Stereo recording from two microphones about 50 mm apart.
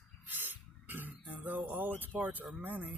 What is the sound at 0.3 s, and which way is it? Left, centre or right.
Throat clearing, right.